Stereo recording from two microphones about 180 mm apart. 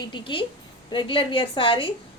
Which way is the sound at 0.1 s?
25° left (ahead or behind).